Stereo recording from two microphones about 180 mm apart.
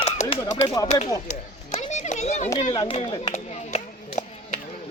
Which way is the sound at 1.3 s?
40° left (ahead or behind).